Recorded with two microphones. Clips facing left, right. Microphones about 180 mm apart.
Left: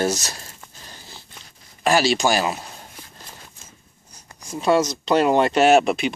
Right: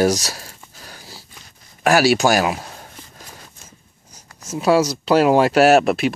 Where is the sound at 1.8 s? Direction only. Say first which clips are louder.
Right 4 dB; 10° right (ahead or behind).